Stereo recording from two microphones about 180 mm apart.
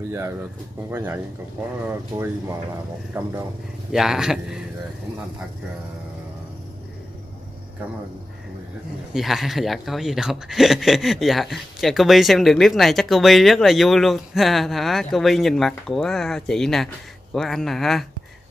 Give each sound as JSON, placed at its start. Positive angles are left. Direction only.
{"t": 0.8, "sound": "speech", "side_deg": -10}
{"t": 3.9, "sound": "speech", "side_deg": -5}
{"t": 9.1, "sound": "speech", "side_deg": 0}